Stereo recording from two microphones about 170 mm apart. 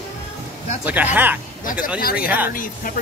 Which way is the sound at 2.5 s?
55° left (ahead or behind).